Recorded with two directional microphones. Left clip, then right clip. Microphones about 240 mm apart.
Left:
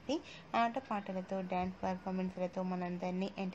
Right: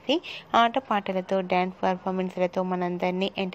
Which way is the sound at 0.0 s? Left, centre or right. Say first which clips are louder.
Right 13 dB; right.